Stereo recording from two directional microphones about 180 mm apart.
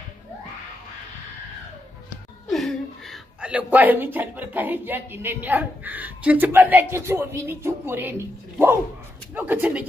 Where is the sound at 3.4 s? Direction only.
5° right (ahead or behind).